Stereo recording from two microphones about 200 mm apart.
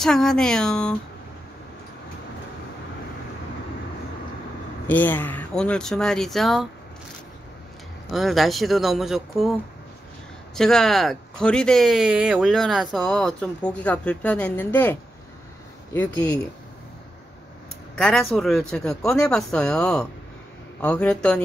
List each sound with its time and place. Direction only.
0.0 s speech: centre (ahead or behind)
4.8 s speech: 10° left (ahead or behind)
8.1 s speech: centre (ahead or behind)
17.9 s speech: 5° left (ahead or behind)